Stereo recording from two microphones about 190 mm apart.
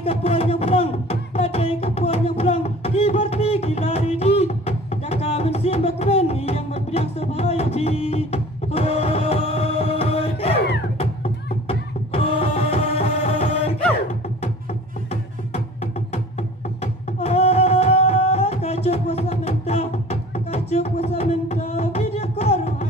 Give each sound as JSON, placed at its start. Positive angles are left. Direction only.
{"t": 0.0, "sound": "music", "side_deg": 30}
{"t": 16.8, "sound": "music", "side_deg": 35}